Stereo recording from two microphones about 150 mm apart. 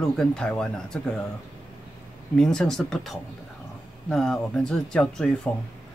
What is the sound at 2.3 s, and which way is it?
Speech, 5° left (ahead or behind).